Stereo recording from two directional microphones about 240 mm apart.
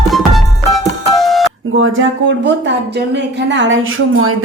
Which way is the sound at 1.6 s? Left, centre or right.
Right.